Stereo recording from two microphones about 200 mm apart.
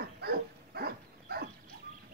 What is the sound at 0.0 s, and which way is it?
Dog, 50° right (ahead or behind).